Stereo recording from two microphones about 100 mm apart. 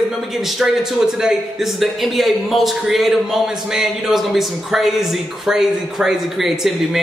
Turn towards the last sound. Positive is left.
turn(degrees=0)  # may be behind; listen again after turning